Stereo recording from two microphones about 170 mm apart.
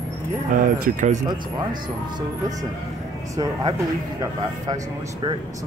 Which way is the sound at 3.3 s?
20° right (ahead or behind).